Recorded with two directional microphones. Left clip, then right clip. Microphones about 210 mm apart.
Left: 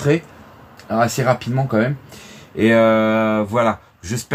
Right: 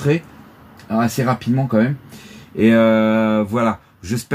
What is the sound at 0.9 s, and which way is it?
Speech, 15° left (ahead or behind).